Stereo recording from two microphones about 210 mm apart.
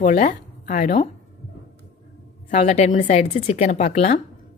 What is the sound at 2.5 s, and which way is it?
A woman's voice, 35° left (ahead or behind).